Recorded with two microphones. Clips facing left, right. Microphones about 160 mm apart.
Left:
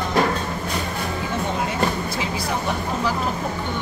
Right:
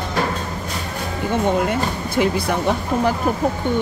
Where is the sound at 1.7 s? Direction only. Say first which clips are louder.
Right 1 dB; 55° right (ahead or behind).